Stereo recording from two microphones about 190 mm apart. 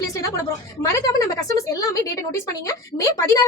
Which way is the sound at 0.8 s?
15° left (ahead or behind).